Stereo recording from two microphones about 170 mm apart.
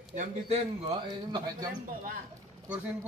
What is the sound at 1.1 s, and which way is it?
Speech, 25° right (ahead or behind).